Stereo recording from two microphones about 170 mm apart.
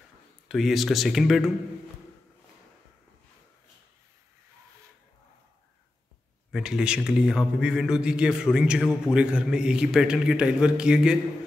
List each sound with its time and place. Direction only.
0.5 s a man's voice: centre (ahead or behind)
6.5 s a man's voice: 5° right (ahead or behind)